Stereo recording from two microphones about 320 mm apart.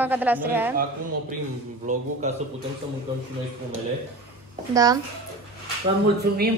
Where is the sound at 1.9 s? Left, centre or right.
Right.